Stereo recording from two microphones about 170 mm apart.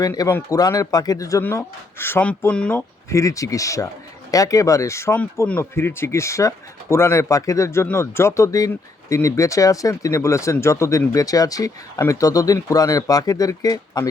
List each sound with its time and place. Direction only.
0.0 s speech: 20° left (ahead or behind)
3.1 s speech: 20° left (ahead or behind)